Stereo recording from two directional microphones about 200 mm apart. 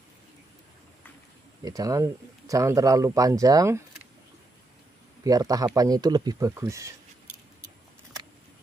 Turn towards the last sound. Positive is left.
turn(degrees=-15)  # may be behind; listen again after turning